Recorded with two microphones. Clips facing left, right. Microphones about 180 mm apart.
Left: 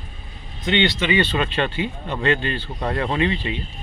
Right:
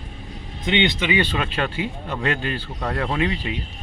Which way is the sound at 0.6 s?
10° right (ahead or behind).